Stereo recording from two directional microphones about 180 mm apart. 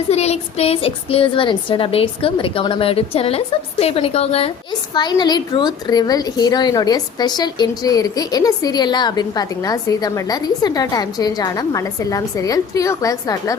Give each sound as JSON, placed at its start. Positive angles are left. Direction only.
{"t": 0.1, "sound": "a woman's voice", "side_deg": 35}
{"t": 4.9, "sound": "a woman's voice", "side_deg": 25}